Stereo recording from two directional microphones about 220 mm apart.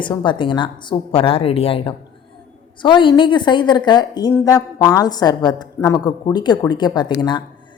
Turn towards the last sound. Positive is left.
turn(degrees=20)  # may be behind; listen again after turning